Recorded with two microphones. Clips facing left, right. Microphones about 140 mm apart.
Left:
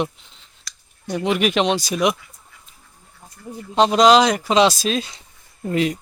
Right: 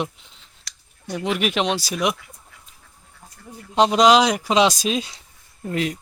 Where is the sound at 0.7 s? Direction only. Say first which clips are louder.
Left 3 dB; 70° right (ahead or behind).